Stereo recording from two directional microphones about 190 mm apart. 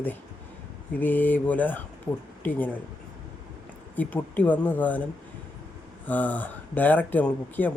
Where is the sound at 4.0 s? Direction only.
10° left (ahead or behind).